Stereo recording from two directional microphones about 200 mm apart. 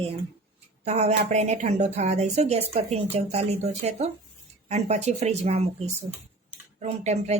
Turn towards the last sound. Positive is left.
turn(degrees=-35)  # may be behind; listen again after turning